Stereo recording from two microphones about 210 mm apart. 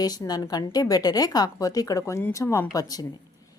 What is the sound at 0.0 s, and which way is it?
A woman's voice, 20° left (ahead or behind).